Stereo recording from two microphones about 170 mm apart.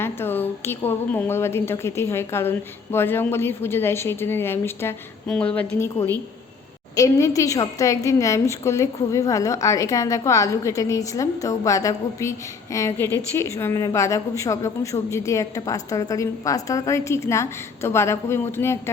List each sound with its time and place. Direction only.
0.0 s a woman's voice: 15° left (ahead or behind)